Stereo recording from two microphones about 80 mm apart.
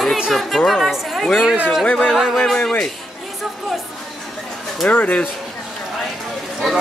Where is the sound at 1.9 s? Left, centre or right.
Centre.